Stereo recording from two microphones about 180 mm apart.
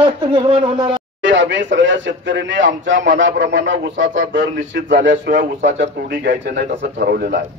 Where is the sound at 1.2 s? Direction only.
90° right; by 7.4 s 60° right (ahead or behind).